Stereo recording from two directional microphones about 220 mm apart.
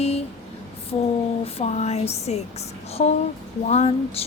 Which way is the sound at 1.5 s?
30° left (ahead or behind).